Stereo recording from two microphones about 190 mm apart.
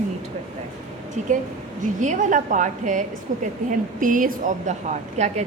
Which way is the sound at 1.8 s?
40° right (ahead or behind).